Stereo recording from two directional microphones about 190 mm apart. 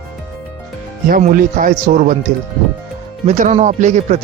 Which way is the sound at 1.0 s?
45° right (ahead or behind).